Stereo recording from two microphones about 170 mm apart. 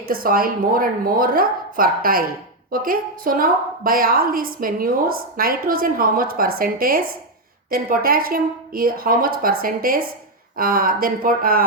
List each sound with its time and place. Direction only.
0.1 s a woman's voice: 60° right (ahead or behind)